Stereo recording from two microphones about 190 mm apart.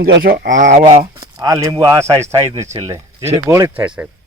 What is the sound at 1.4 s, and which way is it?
A man's voice, 15° right (ahead or behind).